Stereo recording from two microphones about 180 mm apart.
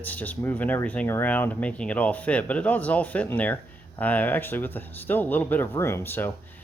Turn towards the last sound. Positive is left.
turn(degrees=10)  # may be behind; listen again after turning